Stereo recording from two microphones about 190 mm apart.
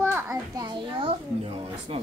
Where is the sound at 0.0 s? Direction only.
15° right (ahead or behind).